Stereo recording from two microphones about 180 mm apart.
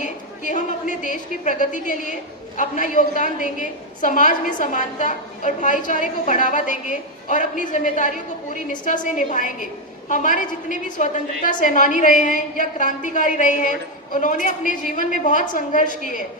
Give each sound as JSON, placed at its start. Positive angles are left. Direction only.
{"t": 0.0, "sound": "a woman's voice", "side_deg": 45}